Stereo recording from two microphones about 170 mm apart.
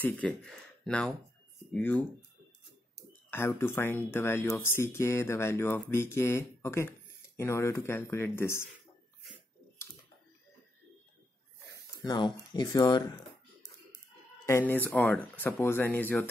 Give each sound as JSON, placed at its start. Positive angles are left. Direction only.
{"t": 0.0, "sound": "speech", "side_deg": 5}
{"t": 3.3, "sound": "speech", "side_deg": 15}
{"t": 12.0, "sound": "speech", "side_deg": 25}
{"t": 14.4, "sound": "speech", "side_deg": 15}